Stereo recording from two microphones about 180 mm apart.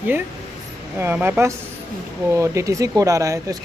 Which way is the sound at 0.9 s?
10° right (ahead or behind).